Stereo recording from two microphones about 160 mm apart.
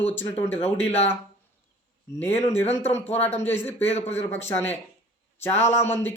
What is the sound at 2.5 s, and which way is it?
Speech, 45° left (ahead or behind).